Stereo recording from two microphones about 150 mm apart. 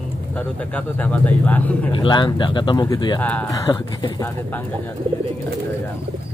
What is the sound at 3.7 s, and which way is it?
Speech, 30° left (ahead or behind).